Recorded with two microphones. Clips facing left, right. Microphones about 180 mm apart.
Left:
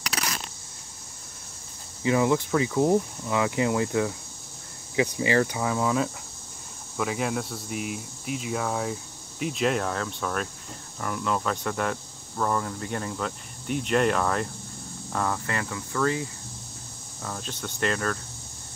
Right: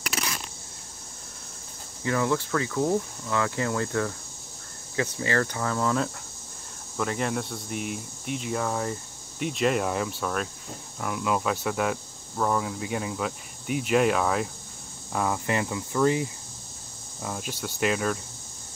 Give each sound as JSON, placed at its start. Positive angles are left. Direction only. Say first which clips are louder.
{"t": 2.0, "sound": "speech", "louder": "left 3 dB", "side_deg": 15}